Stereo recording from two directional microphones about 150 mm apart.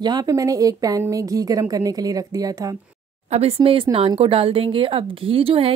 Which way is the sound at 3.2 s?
45° right (ahead or behind).